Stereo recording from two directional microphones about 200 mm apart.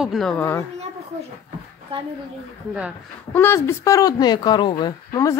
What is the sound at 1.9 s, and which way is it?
Speech, 30° right (ahead or behind).